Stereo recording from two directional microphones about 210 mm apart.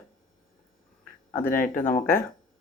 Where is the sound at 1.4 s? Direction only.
40° left (ahead or behind).